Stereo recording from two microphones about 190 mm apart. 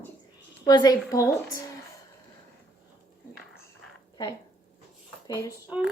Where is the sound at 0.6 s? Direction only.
20° left (ahead or behind).